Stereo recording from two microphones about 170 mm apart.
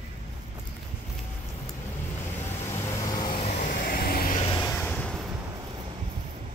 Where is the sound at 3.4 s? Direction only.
55° left (ahead or behind).